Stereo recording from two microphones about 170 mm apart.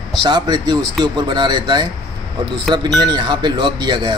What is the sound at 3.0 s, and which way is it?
Speech, 25° right (ahead or behind).